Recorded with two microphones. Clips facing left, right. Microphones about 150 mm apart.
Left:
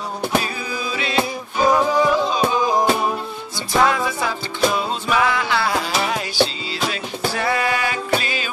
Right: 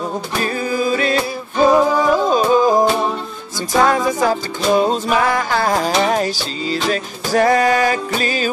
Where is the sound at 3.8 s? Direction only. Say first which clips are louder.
Right 5 dB; 40° right (ahead or behind).